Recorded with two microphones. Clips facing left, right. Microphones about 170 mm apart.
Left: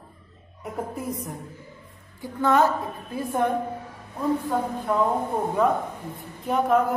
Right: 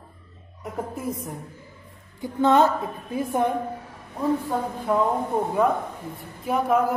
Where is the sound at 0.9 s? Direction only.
Centre (ahead or behind).